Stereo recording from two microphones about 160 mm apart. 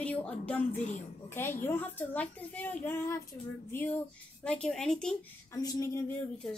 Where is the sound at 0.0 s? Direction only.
10° left (ahead or behind).